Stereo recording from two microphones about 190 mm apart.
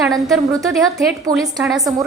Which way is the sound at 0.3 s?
Centre (ahead or behind).